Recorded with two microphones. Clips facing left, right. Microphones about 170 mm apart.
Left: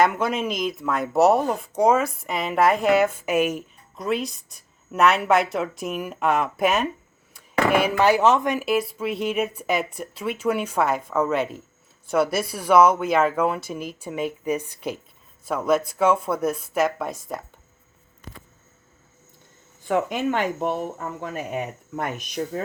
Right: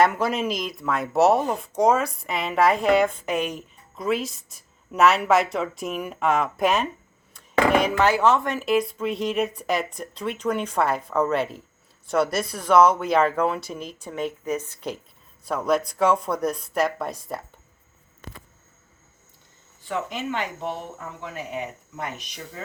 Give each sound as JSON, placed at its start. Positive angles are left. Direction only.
{"t": 0.0, "sound": "speech", "side_deg": 0}
{"t": 8.7, "sound": "speech", "side_deg": 5}
{"t": 19.9, "sound": "speech", "side_deg": 50}